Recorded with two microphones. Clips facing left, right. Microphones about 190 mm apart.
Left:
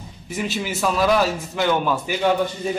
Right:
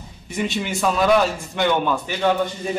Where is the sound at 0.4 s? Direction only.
5° left (ahead or behind).